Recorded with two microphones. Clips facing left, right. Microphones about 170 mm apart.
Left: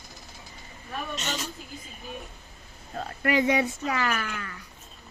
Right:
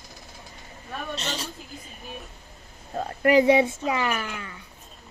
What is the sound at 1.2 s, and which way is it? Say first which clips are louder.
Child singing: right 1 dB; 35° right (ahead or behind).